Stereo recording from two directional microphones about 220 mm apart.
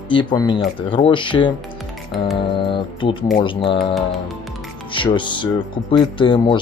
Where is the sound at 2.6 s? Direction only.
25° left (ahead or behind).